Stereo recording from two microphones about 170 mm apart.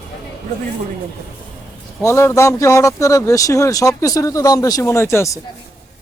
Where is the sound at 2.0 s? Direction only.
15° left (ahead or behind).